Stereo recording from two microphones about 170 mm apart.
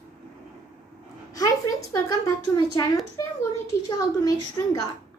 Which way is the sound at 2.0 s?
20° left (ahead or behind).